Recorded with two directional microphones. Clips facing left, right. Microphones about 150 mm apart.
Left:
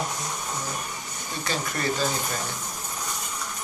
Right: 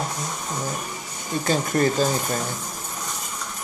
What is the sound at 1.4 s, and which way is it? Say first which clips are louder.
Speech: right 8 dB; 45° right (ahead or behind).